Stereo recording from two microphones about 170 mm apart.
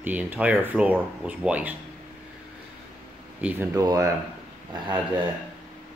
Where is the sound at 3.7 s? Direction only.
20° right (ahead or behind).